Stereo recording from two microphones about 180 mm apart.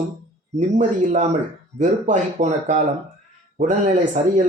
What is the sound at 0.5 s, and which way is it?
A man's voice, 45° right (ahead or behind).